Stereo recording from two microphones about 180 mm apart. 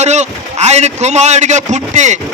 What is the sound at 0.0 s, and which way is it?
A man's voice, 40° right (ahead or behind).